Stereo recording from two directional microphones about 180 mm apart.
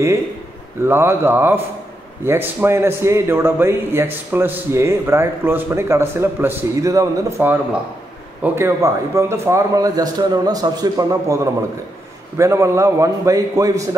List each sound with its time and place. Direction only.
0.8 s a man's voice: 15° right (ahead or behind)